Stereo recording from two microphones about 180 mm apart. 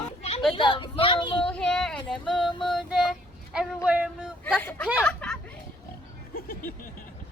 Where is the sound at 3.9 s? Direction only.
5° right (ahead or behind).